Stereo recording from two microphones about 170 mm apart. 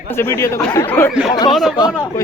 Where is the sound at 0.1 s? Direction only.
15° left (ahead or behind).